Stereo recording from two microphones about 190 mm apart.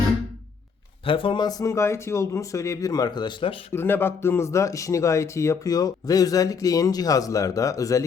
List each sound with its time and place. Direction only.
1.0 s speech: 30° left (ahead or behind)
3.7 s speech: 10° left (ahead or behind)